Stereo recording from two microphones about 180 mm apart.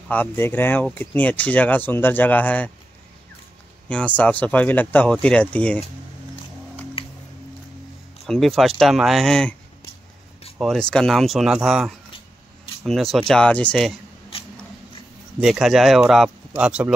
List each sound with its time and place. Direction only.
0.1 s speech: 10° left (ahead or behind)
3.9 s speech: 5° left (ahead or behind)
7.0 s music: 30° left (ahead or behind)
8.3 s speech: centre (ahead or behind)
10.6 s speech: centre (ahead or behind)
15.4 s speech: centre (ahead or behind)